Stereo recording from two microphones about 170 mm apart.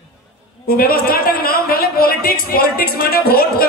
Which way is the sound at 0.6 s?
60° left (ahead or behind).